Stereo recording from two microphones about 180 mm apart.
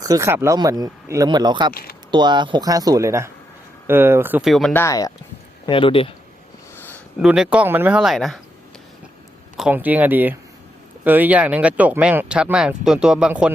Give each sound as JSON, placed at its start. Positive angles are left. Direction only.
{"t": 0.0, "sound": "speech", "side_deg": -20}
{"t": 1.7, "sound": "speech", "side_deg": 55}
{"t": 2.0, "sound": "speech", "side_deg": -25}
{"t": 4.8, "sound": "speech", "side_deg": 20}
{"t": 5.6, "sound": "speech", "side_deg": 30}
{"t": 6.7, "sound": "a sound", "side_deg": 10}
{"t": 7.2, "sound": "speech", "side_deg": -5}
{"t": 9.6, "sound": "speech", "side_deg": -5}